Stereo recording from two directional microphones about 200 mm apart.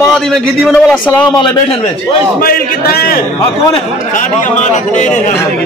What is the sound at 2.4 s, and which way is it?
A man's voice, 45° left (ahead or behind).